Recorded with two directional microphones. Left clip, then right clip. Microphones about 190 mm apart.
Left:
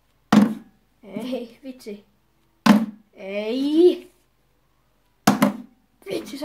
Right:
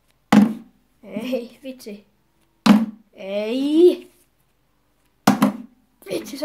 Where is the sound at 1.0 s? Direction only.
30° right (ahead or behind).